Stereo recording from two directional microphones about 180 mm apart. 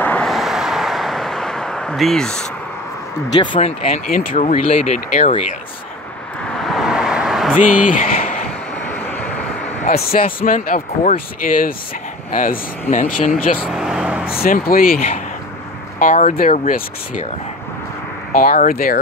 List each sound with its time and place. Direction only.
0.0 s vehicle: 5° left (ahead or behind)
3.3 s speech: 30° left (ahead or behind)
6.6 s vehicle: centre (ahead or behind)
7.6 s speech: 50° left (ahead or behind)
8.8 s vehicle: 10° left (ahead or behind)
9.8 s speech: 55° left (ahead or behind)
13.7 s vehicle: centre (ahead or behind)
14.4 s speech: 50° left (ahead or behind)
18.4 s speech: 50° left (ahead or behind)